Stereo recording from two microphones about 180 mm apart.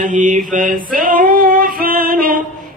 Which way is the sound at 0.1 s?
45° right (ahead or behind).